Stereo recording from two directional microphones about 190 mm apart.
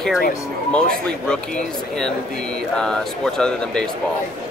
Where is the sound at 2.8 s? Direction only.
5° left (ahead or behind).